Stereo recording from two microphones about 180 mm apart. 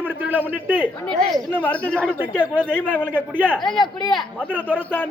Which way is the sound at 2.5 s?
5° right (ahead or behind).